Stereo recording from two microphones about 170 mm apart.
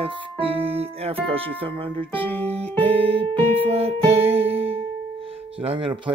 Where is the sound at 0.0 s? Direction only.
35° right (ahead or behind).